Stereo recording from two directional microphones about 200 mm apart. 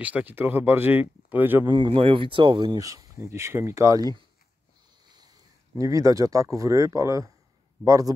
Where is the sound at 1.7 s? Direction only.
25° right (ahead or behind).